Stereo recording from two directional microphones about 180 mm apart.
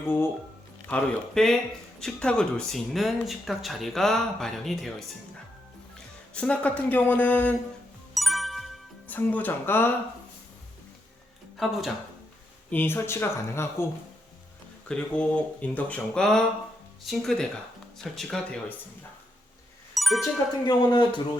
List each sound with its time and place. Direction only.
0.0 s speech: 10° left (ahead or behind)
6.3 s speech: 5° left (ahead or behind)
8.1 s music: centre (ahead or behind)
11.5 s speech: centre (ahead or behind)
12.7 s speech: 10° left (ahead or behind)
14.8 s speech: 5° left (ahead or behind)
19.9 s music: centre (ahead or behind)
20.7 s a man's voice: 25° left (ahead or behind)